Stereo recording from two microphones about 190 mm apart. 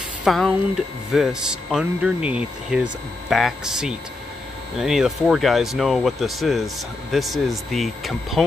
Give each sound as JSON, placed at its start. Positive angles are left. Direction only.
{"t": 0.2, "sound": "speech", "side_deg": 0}